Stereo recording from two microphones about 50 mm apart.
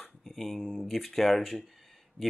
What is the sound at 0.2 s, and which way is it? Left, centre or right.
Speech, centre.